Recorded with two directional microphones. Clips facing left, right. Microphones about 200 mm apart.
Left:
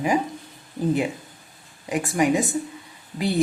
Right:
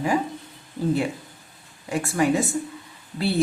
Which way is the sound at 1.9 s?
15° left (ahead or behind).